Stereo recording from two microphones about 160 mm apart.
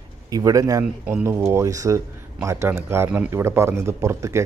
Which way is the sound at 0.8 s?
10° right (ahead or behind).